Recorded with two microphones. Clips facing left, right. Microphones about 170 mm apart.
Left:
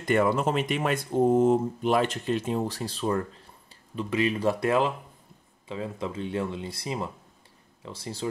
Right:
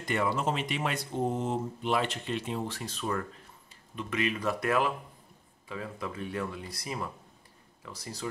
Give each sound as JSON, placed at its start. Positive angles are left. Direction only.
{"t": 0.0, "sound": "speech", "side_deg": 50}